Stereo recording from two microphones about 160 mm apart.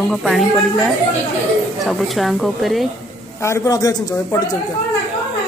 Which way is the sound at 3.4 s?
20° left (ahead or behind).